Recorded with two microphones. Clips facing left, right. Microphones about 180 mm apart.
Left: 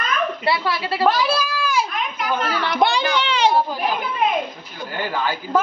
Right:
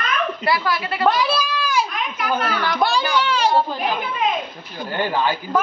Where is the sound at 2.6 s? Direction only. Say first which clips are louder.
Left 1 dB; 20° left (ahead or behind).